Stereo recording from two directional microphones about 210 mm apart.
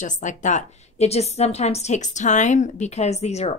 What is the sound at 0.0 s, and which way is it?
A woman's voice, 35° left (ahead or behind).